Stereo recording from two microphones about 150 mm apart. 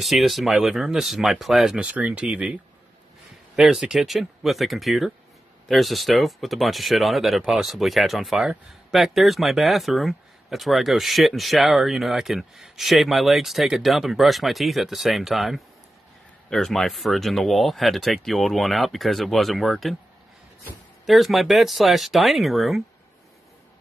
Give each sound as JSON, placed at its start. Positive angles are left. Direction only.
{"t": 0.0, "sound": "speech", "side_deg": 0}
{"t": 3.5, "sound": "speech", "side_deg": -5}
{"t": 21.0, "sound": "speech", "side_deg": 0}